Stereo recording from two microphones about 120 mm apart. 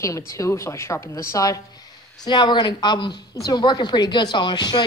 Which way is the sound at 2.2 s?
40° left (ahead or behind).